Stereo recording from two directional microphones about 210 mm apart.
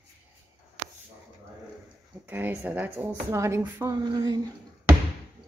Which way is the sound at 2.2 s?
10° right (ahead or behind).